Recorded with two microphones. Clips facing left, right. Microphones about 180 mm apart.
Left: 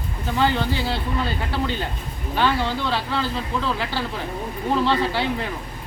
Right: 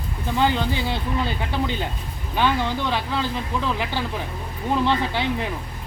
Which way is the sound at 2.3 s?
15° right (ahead or behind).